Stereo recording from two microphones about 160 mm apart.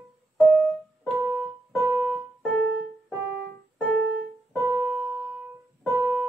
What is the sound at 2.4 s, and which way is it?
Keyboard, 5° left (ahead or behind).